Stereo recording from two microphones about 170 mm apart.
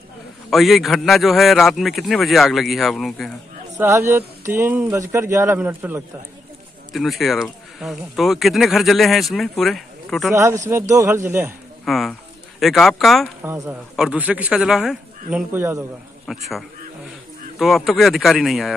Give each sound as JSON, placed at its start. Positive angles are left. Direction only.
{"t": 0.5, "sound": "speech", "side_deg": 0}
{"t": 3.7, "sound": "a man's voice", "side_deg": -15}
{"t": 6.9, "sound": "speech", "side_deg": 0}
{"t": 10.7, "sound": "a man's voice", "side_deg": -15}
{"t": 11.8, "sound": "speech", "side_deg": 0}
{"t": 13.4, "sound": "a man's voice", "side_deg": -15}
{"t": 16.3, "sound": "speech", "side_deg": 0}